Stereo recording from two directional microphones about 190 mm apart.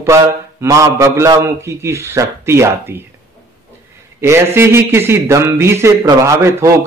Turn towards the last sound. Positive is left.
turn(degrees=-15)  # may be behind; listen again after turning